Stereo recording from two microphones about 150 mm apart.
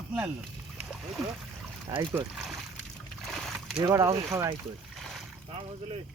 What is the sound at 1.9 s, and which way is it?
Speech, 20° right (ahead or behind).